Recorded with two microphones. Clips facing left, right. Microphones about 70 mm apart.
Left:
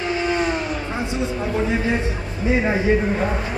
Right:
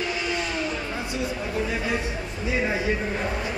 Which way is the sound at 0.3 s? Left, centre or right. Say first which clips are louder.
Left 7 dB; left.